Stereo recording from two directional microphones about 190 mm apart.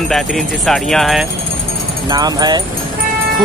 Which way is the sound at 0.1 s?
Centre (ahead or behind).